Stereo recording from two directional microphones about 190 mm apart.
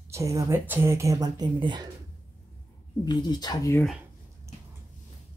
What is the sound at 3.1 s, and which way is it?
Speech, 25° left (ahead or behind).